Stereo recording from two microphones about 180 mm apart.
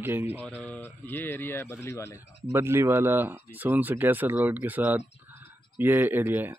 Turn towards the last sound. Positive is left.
turn(degrees=-10)  # may be behind; listen again after turning